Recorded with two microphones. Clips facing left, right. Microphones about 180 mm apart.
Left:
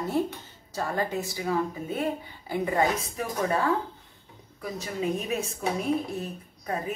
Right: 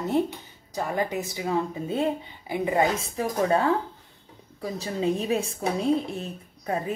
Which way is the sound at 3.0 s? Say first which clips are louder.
Right 4 dB; 25° right (ahead or behind).